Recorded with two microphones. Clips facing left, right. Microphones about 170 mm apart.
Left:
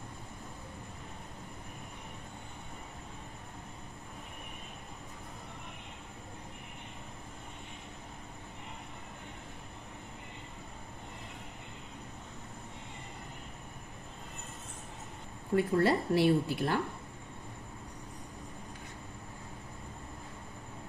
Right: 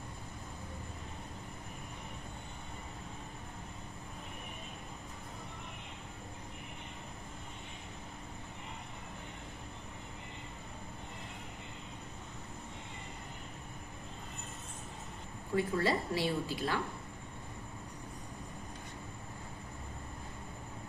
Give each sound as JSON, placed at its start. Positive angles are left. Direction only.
{"t": 15.5, "sound": "speech", "side_deg": 60}